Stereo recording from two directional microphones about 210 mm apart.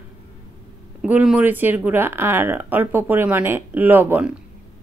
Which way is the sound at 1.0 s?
5° right (ahead or behind).